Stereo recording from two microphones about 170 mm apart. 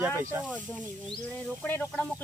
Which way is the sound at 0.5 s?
10° left (ahead or behind).